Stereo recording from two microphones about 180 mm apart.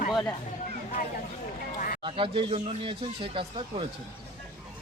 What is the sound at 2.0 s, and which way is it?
Speech, 30° right (ahead or behind).